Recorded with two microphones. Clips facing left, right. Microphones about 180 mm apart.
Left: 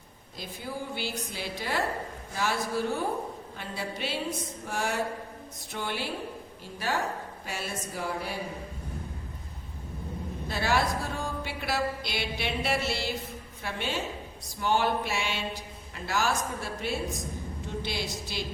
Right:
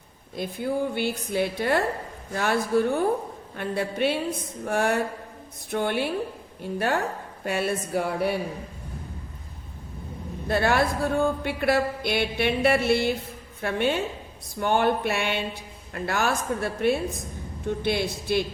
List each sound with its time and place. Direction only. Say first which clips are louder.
0.3 s speech: right 10 dB; 55° right (ahead or behind)
10.5 s speech: right 5 dB; 55° right (ahead or behind)